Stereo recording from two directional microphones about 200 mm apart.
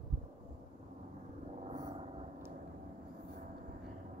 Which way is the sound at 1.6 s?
25° right (ahead or behind).